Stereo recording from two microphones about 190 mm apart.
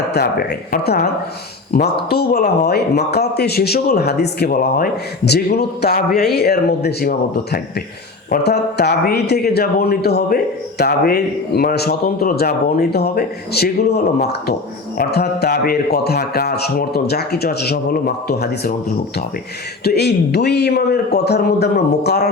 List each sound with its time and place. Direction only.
0.1 s a man's voice: 55° left (ahead or behind)
19.8 s a man's voice: 60° left (ahead or behind)